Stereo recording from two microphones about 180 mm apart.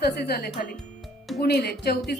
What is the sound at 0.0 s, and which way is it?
Speech, 60° left (ahead or behind).